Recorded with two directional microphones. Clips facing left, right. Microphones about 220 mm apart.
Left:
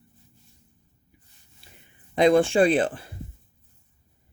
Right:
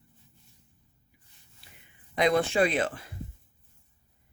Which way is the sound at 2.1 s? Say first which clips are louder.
Left 6 dB; 30° left (ahead or behind).